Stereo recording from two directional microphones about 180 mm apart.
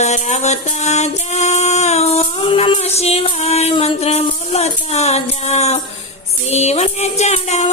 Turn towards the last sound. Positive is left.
turn(degrees=40)  # may be behind; listen again after turning